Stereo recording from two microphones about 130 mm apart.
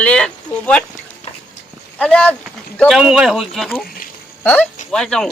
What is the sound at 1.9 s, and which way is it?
Speech, 10° left (ahead or behind).